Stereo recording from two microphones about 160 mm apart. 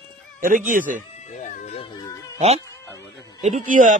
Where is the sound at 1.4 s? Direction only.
45° left (ahead or behind).